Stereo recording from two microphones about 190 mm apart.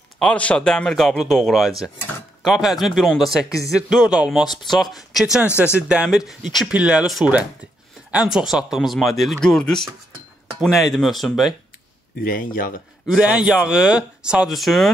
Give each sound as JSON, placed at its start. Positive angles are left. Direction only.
{"t": 0.2, "sound": "speech", "side_deg": 5}
{"t": 12.2, "sound": "speech", "side_deg": 45}
{"t": 13.0, "sound": "speech", "side_deg": -5}